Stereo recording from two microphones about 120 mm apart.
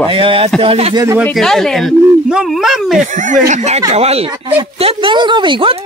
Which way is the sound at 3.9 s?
60° right (ahead or behind).